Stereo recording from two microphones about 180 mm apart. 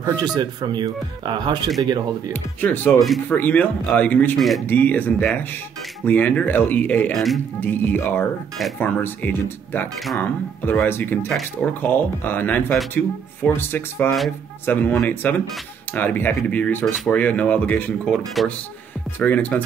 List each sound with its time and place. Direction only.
0.0 s speech: 20° right (ahead or behind)
2.6 s speech: 10° left (ahead or behind)
3.0 s speech: centre (ahead or behind)